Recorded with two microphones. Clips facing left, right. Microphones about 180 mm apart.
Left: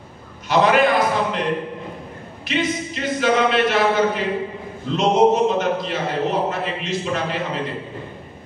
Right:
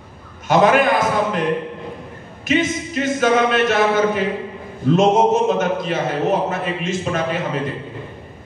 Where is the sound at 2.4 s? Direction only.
45° right (ahead or behind).